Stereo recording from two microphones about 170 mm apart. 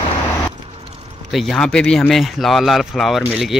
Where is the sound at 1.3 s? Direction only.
Centre (ahead or behind).